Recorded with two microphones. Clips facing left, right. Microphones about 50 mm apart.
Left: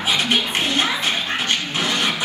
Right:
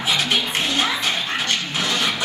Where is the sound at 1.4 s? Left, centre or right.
Centre.